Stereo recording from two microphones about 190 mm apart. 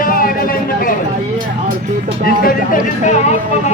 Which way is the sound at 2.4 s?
45° left (ahead or behind).